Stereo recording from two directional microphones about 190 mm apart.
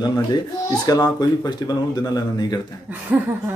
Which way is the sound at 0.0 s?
20° left (ahead or behind).